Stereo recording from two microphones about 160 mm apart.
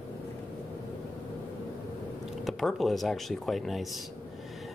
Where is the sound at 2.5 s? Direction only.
Centre (ahead or behind).